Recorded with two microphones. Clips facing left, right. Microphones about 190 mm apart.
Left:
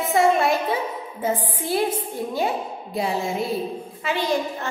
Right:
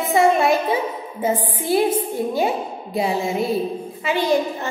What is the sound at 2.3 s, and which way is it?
A woman's voice, 5° right (ahead or behind).